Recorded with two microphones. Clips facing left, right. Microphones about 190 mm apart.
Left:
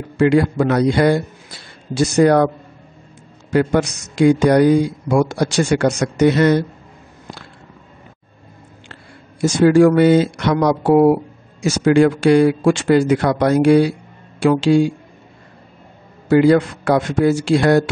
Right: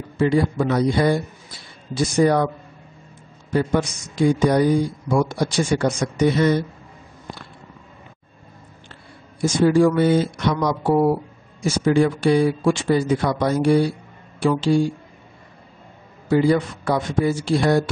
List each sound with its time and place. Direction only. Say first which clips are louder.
0.2 s speech: left 5 dB; 75° left (ahead or behind)
3.5 s speech: left 4 dB; 80° left
9.4 s speech: left 5 dB; 80° left
16.3 s speech: left 5 dB; 75° left (ahead or behind)